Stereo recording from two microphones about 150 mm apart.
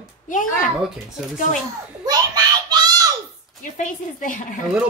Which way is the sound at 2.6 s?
25° right (ahead or behind).